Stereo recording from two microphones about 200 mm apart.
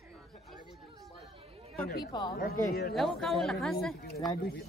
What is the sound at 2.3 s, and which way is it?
Speech, 50° left (ahead or behind).